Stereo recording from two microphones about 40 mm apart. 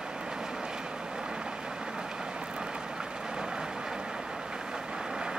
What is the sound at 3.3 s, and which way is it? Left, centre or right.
Vehicle, centre.